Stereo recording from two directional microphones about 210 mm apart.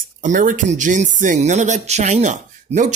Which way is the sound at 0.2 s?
40° right (ahead or behind).